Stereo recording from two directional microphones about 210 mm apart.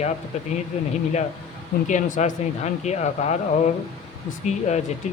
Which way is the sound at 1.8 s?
35° left (ahead or behind).